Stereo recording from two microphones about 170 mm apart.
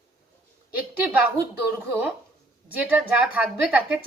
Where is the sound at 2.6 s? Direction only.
10° right (ahead or behind).